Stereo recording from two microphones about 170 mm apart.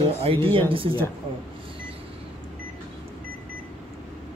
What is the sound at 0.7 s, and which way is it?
Speech, 30° right (ahead or behind).